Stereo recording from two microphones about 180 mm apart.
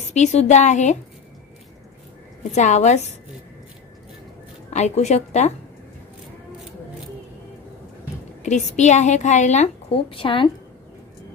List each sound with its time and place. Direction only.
0.1 s a woman's voice: 40° left (ahead or behind)
2.5 s a woman's voice: 40° left (ahead or behind)
4.7 s a woman's voice: 40° left (ahead or behind)
8.4 s a woman's voice: 40° left (ahead or behind)